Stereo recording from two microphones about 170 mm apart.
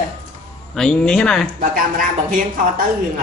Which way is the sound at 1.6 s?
55° right (ahead or behind).